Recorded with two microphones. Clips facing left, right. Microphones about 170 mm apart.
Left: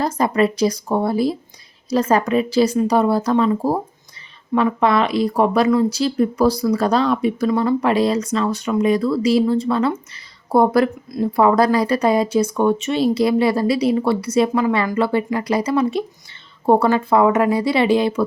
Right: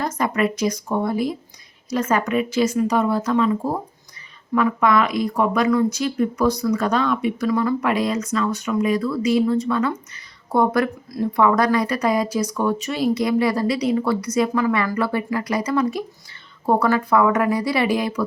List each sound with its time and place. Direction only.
0.0 s a woman's voice: 30° left (ahead or behind)